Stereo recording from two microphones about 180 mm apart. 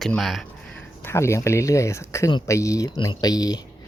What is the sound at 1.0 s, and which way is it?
Speech, 15° left (ahead or behind).